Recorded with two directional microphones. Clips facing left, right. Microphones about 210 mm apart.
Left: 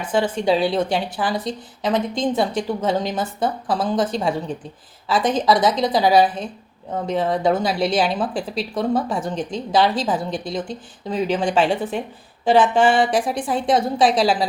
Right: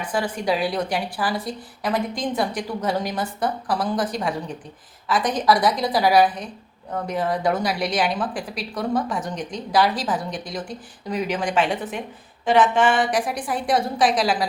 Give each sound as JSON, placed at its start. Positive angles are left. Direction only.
{"t": 0.0, "sound": "speech", "side_deg": 25}